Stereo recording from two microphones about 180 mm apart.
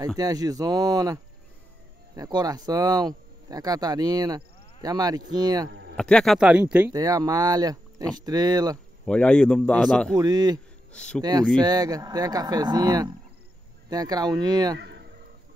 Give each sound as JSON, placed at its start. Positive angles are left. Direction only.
{"t": 0.2, "sound": "speech", "side_deg": -20}
{"t": 5.7, "sound": "a sound", "side_deg": -70}
{"t": 5.9, "sound": "speech", "side_deg": 5}
{"t": 6.9, "sound": "speech", "side_deg": -20}
{"t": 9.0, "sound": "speech", "side_deg": 5}
{"t": 10.1, "sound": "speech", "side_deg": -20}
{"t": 10.9, "sound": "speech", "side_deg": 5}
{"t": 11.1, "sound": "speech", "side_deg": -20}
{"t": 14.8, "sound": "a sound", "side_deg": -75}